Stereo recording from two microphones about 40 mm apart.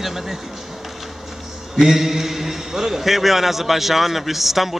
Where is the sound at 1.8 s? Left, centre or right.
Centre.